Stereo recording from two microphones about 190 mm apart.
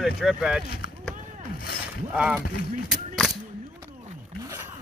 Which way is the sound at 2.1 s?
5° right (ahead or behind).